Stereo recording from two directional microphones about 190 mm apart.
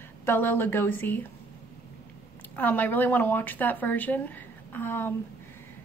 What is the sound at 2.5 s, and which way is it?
A woman's voice, 10° left (ahead or behind).